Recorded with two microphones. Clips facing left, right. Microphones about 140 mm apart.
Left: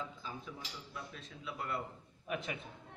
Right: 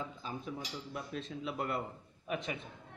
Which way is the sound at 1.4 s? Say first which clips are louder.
Right 3 dB; 50° right (ahead or behind).